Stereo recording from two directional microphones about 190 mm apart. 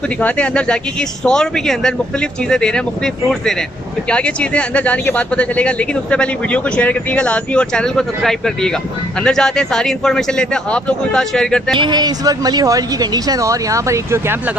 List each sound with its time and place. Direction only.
0.2 s speech: 5° left (ahead or behind)
4.1 s speech: 5° left (ahead or behind)
11.7 s a woman's voice: 25° right (ahead or behind)